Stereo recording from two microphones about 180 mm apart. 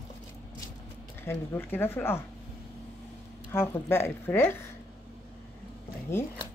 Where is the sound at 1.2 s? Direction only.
10° left (ahead or behind).